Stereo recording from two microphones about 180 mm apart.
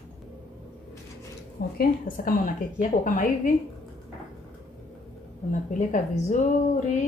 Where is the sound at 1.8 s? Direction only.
50° left (ahead or behind).